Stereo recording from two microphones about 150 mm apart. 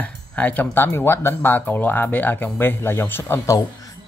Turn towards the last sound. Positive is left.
turn(degrees=20)  # may be behind; listen again after turning